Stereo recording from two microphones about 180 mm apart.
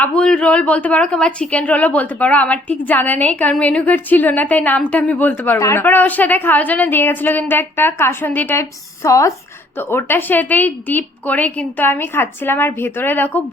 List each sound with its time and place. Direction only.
0.0 s a woman's voice: 5° left (ahead or behind)